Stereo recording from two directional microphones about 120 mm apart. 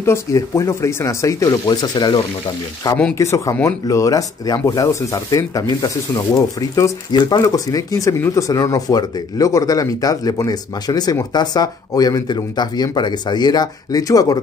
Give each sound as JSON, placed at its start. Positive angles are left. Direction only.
{"t": 0.0, "sound": "speech", "side_deg": 25}
{"t": 3.2, "sound": "speech", "side_deg": 25}